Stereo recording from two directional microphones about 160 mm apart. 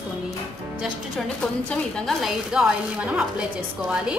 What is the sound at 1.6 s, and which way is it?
A woman's voice, 5° left (ahead or behind).